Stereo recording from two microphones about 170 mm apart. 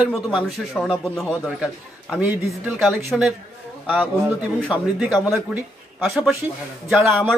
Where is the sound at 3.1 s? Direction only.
5° left (ahead or behind).